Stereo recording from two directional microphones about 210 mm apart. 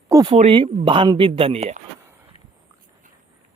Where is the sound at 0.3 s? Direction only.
25° right (ahead or behind).